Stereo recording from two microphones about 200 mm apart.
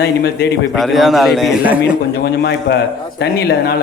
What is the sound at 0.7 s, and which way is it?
A man's voice, centre (ahead or behind).